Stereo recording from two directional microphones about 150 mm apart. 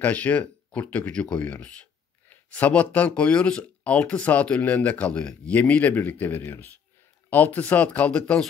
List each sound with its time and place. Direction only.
0.0 s speech: 10° left (ahead or behind)